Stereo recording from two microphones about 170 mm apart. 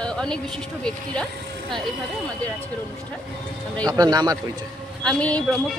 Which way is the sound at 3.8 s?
20° right (ahead or behind).